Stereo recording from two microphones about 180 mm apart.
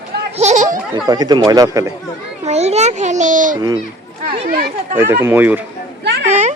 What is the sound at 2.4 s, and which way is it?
A child's voice, 35° right (ahead or behind).